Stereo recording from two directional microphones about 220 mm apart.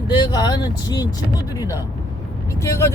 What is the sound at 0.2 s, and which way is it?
Speech, 20° left (ahead or behind).